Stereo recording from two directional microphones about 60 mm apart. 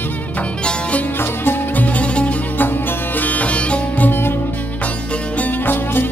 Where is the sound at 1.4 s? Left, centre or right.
Left.